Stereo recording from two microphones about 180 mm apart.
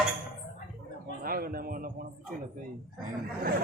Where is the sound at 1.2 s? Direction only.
55° right (ahead or behind).